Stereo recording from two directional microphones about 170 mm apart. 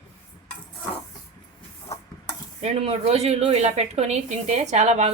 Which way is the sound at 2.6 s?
40° right (ahead or behind).